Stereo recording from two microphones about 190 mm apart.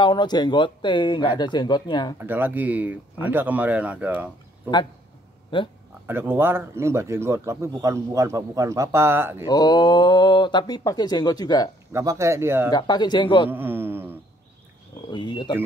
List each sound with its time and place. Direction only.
0.0 s speech: 25° left (ahead or behind)
2.1 s speech: 10° right (ahead or behind)
5.5 s speech: 25° left (ahead or behind)
6.0 s speech: 10° right (ahead or behind)
9.5 s speech: 20° left (ahead or behind)
11.9 s speech: 15° right (ahead or behind)
12.7 s speech: 20° left (ahead or behind)
13.5 s a sound: 10° right (ahead or behind)
15.0 s speech: 25° left (ahead or behind)